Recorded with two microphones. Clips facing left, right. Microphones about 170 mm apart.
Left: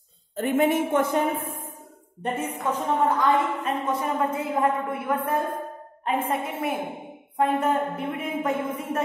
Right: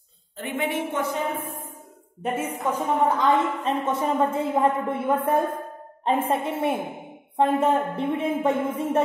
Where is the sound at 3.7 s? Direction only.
25° right (ahead or behind).